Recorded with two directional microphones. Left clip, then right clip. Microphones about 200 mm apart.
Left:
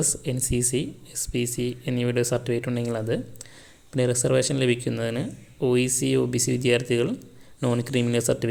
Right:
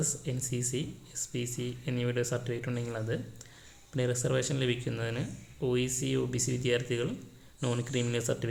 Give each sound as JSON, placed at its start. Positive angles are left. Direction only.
{"t": 0.0, "sound": "speech", "side_deg": 30}